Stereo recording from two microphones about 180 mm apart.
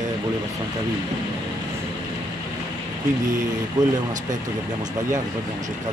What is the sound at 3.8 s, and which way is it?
Speech, 20° right (ahead or behind).